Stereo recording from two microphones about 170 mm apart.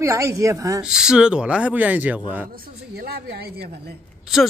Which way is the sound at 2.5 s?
65° right (ahead or behind).